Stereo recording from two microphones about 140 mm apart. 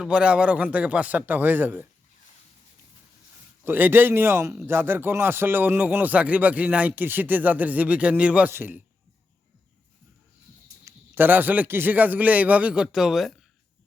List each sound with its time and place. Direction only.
0.0 s speech: 5° right (ahead or behind)
3.6 s speech: 15° right (ahead or behind)
10.8 s speech: 15° right (ahead or behind)